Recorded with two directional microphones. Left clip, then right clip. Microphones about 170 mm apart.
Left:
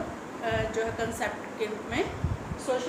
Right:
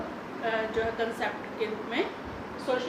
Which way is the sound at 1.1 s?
25° left (ahead or behind).